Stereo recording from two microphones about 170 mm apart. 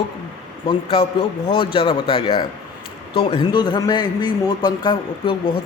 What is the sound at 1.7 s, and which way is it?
A man's voice, 30° left (ahead or behind).